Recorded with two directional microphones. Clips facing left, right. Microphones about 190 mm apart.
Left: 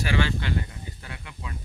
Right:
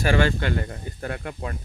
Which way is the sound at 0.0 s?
45° right (ahead or behind).